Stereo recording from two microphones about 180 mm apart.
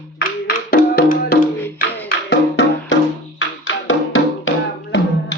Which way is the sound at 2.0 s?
80° left.